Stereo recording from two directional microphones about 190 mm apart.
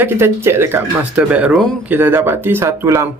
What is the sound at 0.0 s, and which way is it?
Speech, 10° right (ahead or behind).